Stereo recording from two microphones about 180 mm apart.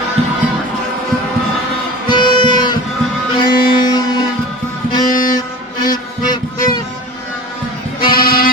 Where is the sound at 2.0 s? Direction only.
25° left (ahead or behind).